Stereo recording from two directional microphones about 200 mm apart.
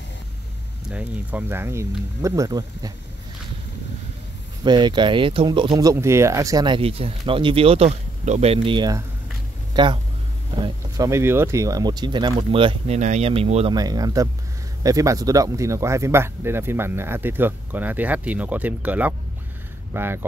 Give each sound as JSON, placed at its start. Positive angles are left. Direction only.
{"t": 0.8, "sound": "speech", "side_deg": -5}
{"t": 4.6, "sound": "speech", "side_deg": -20}
{"t": 10.5, "sound": "a sound", "side_deg": -25}
{"t": 11.1, "sound": "speech", "side_deg": -10}
{"t": 13.7, "sound": "speech", "side_deg": -20}